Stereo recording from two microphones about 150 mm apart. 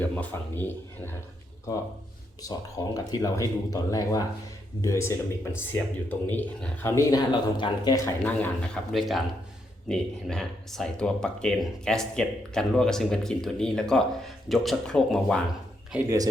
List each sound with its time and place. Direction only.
0.0 s a man's voice: 10° left (ahead or behind)
2.4 s a man's voice: 25° left (ahead or behind)
7.5 s speech: 30° left (ahead or behind)
8.2 s speech: 10° left (ahead or behind)
15.9 s speech: 10° right (ahead or behind)